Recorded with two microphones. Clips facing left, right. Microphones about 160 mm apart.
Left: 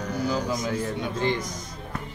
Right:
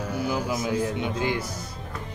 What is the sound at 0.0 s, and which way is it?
Music, 5° right (ahead or behind).